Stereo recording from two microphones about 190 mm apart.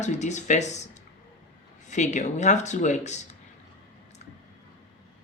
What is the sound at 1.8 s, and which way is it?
Speech, 40° left (ahead or behind).